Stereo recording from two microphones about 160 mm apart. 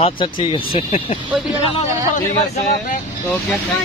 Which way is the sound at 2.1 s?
55° left (ahead or behind).